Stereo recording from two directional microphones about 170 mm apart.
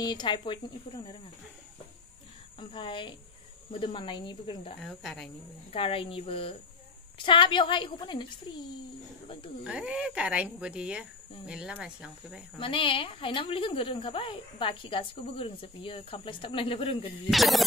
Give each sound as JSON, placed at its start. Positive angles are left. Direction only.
{"t": 0.0, "sound": "a woman's voice", "side_deg": 25}
{"t": 2.7, "sound": "a woman's voice", "side_deg": 30}
{"t": 4.8, "sound": "speech", "side_deg": 0}
{"t": 5.7, "sound": "a woman's voice", "side_deg": 35}
{"t": 9.7, "sound": "speech", "side_deg": -5}
{"t": 12.5, "sound": "a woman's voice", "side_deg": 30}
{"t": 17.3, "sound": "speech", "side_deg": 0}